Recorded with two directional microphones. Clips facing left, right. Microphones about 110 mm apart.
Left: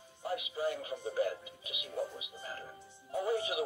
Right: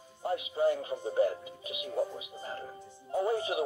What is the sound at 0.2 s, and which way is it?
Speech, 30° right (ahead or behind).